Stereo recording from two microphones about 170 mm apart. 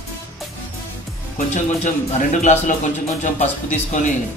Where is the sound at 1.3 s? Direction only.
45° left (ahead or behind).